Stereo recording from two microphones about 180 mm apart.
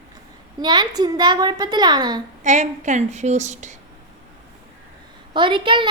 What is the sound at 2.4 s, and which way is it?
A woman's voice, 40° right (ahead or behind).